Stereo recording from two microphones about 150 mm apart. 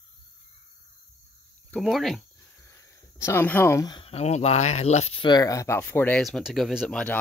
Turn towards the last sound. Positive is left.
turn(degrees=5)  # may be behind; listen again after turning